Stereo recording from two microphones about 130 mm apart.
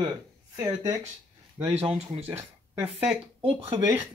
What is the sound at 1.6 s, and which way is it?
Speech, 55° right (ahead or behind).